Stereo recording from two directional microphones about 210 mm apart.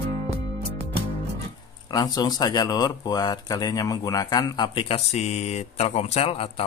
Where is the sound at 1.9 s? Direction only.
20° left (ahead or behind).